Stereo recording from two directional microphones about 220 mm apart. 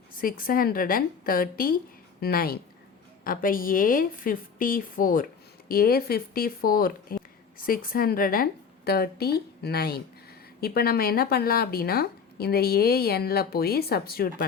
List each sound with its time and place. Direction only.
0.2 s a woman's voice: 40° left (ahead or behind)